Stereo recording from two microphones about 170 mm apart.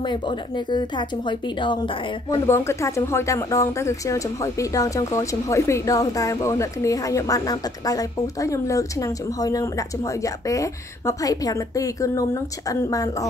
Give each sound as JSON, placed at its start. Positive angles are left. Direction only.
{"t": 0.0, "sound": "speech", "side_deg": 25}
{"t": 2.4, "sound": "speech", "side_deg": 15}